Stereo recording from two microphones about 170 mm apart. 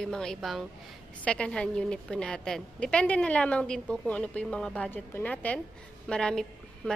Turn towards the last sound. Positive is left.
turn(degrees=5)  # may be behind; listen again after turning